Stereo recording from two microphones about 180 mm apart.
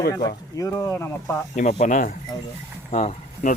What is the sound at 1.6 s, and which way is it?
Speech, 45° left (ahead or behind).